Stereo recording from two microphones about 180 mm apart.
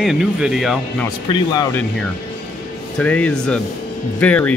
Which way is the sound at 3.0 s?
5° left (ahead or behind).